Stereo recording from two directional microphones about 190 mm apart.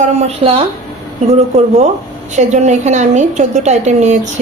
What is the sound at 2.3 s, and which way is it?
Speech, 35° right (ahead or behind).